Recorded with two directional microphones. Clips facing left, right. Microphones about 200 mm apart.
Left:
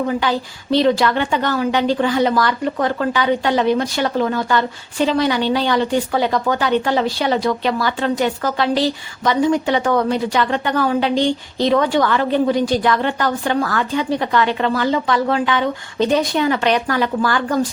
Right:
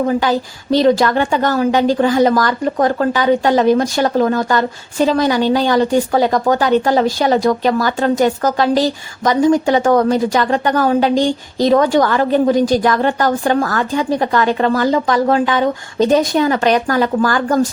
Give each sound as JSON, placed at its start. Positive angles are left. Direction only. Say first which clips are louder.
{"t": 0.1, "sound": "a woman's voice", "louder": "right 4 dB", "side_deg": -40}